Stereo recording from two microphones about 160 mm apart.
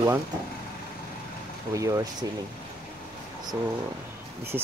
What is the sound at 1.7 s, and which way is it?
Speech, 20° right (ahead or behind).